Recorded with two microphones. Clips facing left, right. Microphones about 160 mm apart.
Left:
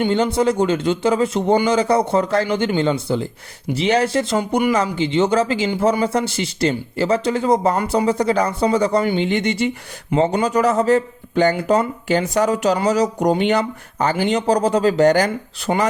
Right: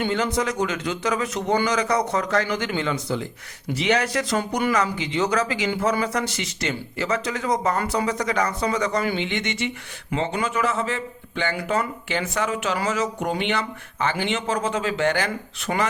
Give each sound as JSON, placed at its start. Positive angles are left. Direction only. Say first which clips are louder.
{"t": 0.0, "sound": "speech", "louder": "left 6 dB", "side_deg": 30}
{"t": 4.4, "sound": "speech", "louder": "left 5 dB", "side_deg": 15}
{"t": 4.7, "sound": "speech", "louder": "left 5 dB", "side_deg": 30}